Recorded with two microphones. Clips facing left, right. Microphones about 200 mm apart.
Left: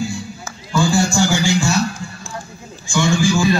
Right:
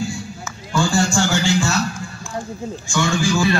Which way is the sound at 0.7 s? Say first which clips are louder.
Left 2 dB; 5° left (ahead or behind).